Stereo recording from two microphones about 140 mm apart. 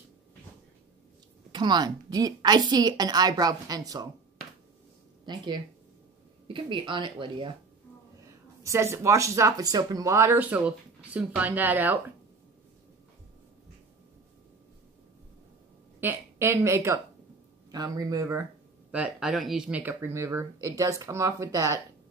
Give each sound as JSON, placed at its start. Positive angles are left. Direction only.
{"t": 1.5, "sound": "speech", "side_deg": -30}
{"t": 5.2, "sound": "speech", "side_deg": -30}
{"t": 8.6, "sound": "speech", "side_deg": -20}
{"t": 16.0, "sound": "speech", "side_deg": -15}